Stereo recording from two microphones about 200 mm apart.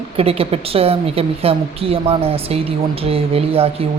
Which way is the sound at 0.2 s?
30° right (ahead or behind).